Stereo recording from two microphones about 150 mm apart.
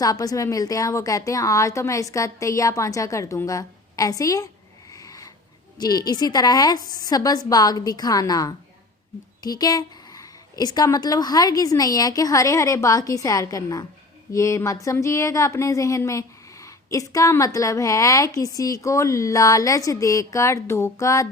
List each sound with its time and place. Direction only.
0.0 s a woman's voice: 25° left (ahead or behind)
4.9 s a sound: 25° left (ahead or behind)
5.7 s a woman's voice: 25° left (ahead or behind)